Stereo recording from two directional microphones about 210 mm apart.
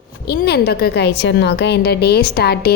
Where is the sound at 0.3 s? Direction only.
50° left (ahead or behind).